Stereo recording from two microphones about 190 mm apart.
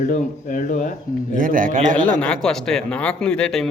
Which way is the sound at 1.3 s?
45° right (ahead or behind).